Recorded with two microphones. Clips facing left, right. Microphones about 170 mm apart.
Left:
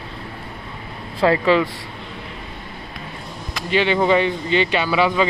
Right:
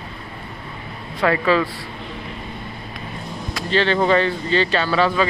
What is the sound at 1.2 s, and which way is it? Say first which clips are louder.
Speech: left 2 dB; 25° left (ahead or behind).